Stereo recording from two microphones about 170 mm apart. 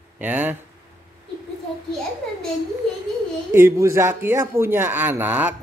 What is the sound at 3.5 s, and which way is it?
Speech, 15° right (ahead or behind).